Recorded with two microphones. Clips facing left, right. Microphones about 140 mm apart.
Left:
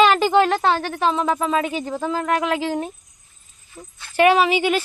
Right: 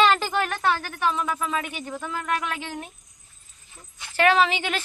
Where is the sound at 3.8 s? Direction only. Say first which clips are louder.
Left 6 dB; 20° left (ahead or behind).